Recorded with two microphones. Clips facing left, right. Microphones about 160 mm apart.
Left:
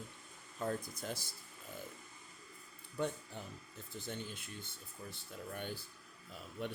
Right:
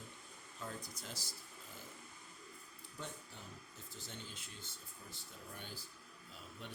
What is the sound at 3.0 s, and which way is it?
Speech, 60° left (ahead or behind).